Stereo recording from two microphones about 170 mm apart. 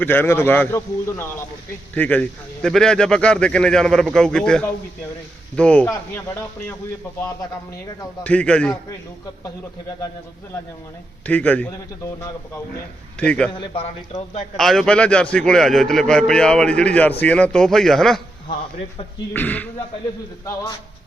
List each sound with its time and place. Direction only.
0.0 s a man's voice: 10° left (ahead or behind)
8.2 s a man's voice: 5° left (ahead or behind)
11.3 s a man's voice: 10° left (ahead or behind)
13.1 s a man's voice: 5° left (ahead or behind)
13.5 s a man's voice: 30° left (ahead or behind)
14.5 s a man's voice: centre (ahead or behind)
19.3 s a man's voice: 10° left (ahead or behind)